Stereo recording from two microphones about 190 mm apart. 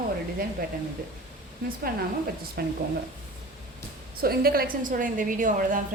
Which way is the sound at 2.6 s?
55° right (ahead or behind).